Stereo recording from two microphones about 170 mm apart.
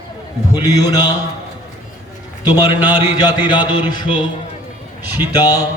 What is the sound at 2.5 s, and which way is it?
Mantra, 25° left (ahead or behind).